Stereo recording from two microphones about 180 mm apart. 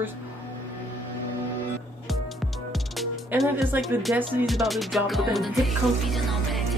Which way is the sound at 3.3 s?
10° right (ahead or behind).